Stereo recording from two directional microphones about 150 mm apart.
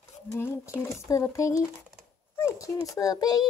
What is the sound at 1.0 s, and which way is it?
Speech, 20° left (ahead or behind).